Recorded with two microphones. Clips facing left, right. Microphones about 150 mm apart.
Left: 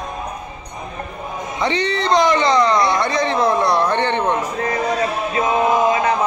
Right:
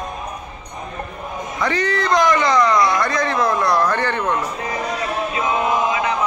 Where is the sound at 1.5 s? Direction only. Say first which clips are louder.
Even; 25° left (ahead or behind).